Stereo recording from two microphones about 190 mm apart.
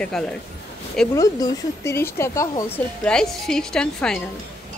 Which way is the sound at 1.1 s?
15° left (ahead or behind).